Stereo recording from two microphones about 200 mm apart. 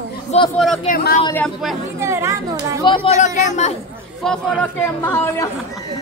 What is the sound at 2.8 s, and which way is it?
Speech, 25° left (ahead or behind).